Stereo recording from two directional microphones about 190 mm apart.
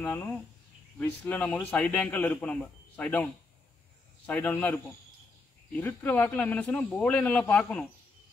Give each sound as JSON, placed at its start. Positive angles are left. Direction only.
{"t": 0.0, "sound": "a man's voice", "side_deg": 10}
{"t": 4.3, "sound": "a man's voice", "side_deg": 10}